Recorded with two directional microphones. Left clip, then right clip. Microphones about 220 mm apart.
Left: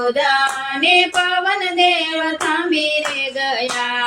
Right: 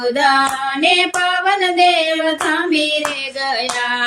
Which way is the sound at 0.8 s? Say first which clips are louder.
Left 1 dB; 25° right (ahead or behind).